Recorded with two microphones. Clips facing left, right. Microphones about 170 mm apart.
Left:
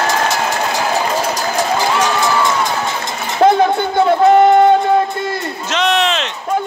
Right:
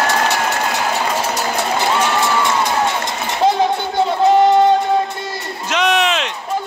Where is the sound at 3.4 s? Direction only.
55° left (ahead or behind).